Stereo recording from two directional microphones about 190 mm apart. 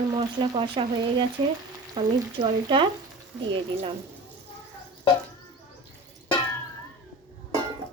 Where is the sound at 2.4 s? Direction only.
25° right (ahead or behind).